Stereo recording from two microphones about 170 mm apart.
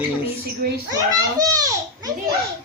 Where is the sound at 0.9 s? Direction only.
20° right (ahead or behind).